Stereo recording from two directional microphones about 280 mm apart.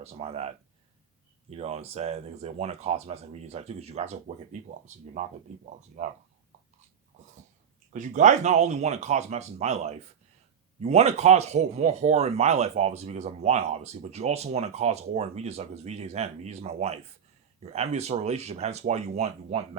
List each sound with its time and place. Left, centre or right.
0.0 s speech: right
6.0 s speech: right
7.9 s speech: right